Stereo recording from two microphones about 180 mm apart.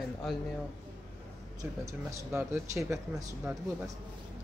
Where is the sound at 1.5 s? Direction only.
15° right (ahead or behind).